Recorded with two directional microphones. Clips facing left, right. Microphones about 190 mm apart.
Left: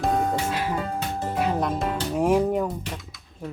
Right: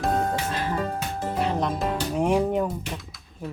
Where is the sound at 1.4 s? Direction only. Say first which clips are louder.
Left 1 dB; 5° left (ahead or behind).